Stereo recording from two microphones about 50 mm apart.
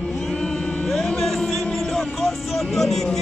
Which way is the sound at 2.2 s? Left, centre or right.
Centre.